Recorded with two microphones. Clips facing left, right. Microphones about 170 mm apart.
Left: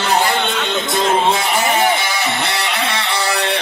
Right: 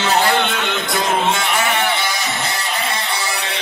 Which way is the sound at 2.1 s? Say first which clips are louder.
Left 3 dB; 60° left (ahead or behind).